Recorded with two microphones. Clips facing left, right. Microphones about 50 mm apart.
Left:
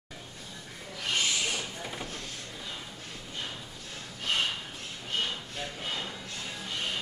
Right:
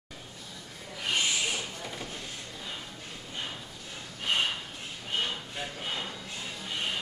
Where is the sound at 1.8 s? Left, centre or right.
Centre.